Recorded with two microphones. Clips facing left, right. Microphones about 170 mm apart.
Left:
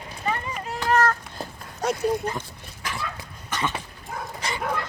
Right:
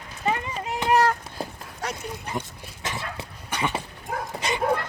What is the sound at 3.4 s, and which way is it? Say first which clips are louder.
Dog: right 1 dB; 10° right (ahead or behind).